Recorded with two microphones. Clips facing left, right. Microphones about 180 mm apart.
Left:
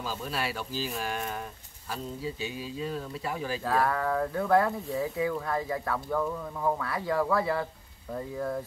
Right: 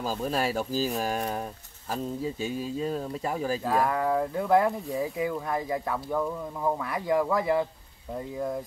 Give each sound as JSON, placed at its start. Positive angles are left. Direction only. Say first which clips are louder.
{"t": 0.0, "sound": "speech", "louder": "right 5 dB", "side_deg": -45}
{"t": 3.6, "sound": "speech", "louder": "even", "side_deg": -15}